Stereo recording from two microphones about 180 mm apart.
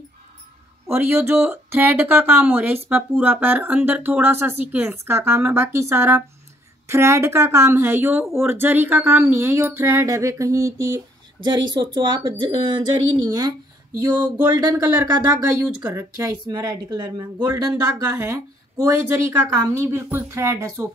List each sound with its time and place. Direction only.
0.8 s speech: 15° right (ahead or behind)